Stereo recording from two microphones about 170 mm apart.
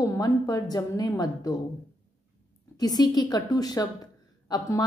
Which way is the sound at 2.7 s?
25° left (ahead or behind).